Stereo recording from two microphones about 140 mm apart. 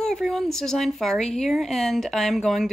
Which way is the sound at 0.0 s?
Centre (ahead or behind).